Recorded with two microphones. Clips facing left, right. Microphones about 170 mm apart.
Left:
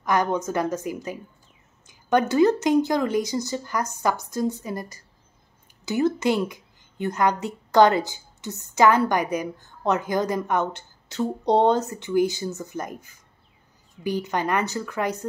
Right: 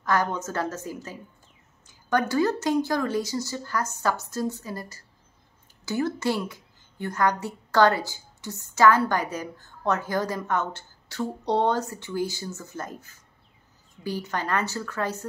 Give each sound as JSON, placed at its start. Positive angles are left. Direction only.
{"t": 0.0, "sound": "a woman's voice", "side_deg": 15}